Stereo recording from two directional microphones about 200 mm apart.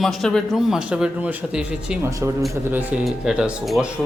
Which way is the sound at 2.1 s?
15° right (ahead or behind).